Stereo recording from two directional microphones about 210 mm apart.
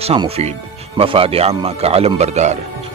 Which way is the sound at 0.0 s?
25° right (ahead or behind).